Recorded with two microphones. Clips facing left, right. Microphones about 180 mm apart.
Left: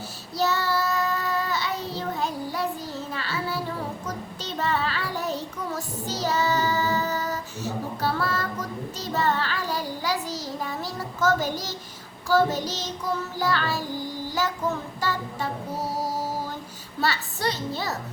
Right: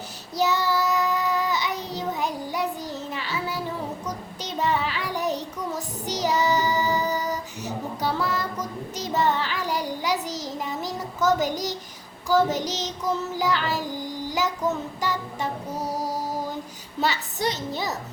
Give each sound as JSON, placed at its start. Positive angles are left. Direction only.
{"t": 0.3, "sound": "child singing", "side_deg": -15}
{"t": 17.0, "sound": "child singing", "side_deg": -20}